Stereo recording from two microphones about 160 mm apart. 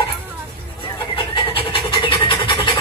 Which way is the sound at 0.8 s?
30° left (ahead or behind).